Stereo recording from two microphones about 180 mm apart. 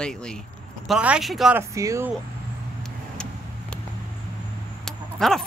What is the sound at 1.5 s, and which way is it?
Speech, 15° right (ahead or behind).